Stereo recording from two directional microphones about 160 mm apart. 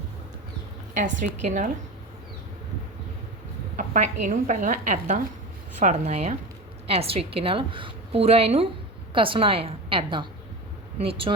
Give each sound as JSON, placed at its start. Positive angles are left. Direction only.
{"t": 0.9, "sound": "a woman's voice", "side_deg": -50}
{"t": 3.8, "sound": "a woman's voice", "side_deg": -50}